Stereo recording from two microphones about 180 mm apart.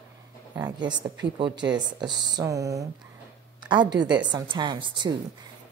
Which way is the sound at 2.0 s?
25° right (ahead or behind).